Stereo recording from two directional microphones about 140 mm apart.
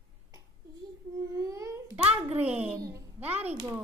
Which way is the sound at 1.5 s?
20° right (ahead or behind).